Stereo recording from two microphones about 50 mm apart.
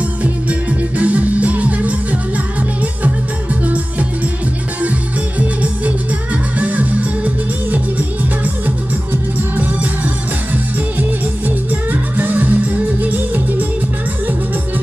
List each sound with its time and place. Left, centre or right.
0.2 s music: right
5.4 s music: right
11.0 s music: right